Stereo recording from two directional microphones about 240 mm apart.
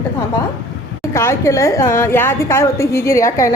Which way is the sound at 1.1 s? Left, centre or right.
Centre.